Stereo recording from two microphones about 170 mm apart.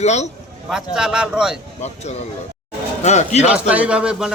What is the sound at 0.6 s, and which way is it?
Speech, 5° right (ahead or behind).